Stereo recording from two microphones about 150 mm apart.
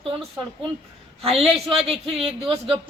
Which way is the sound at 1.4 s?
40° right (ahead or behind).